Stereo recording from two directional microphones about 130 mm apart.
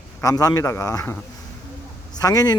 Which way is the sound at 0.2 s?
25° left (ahead or behind).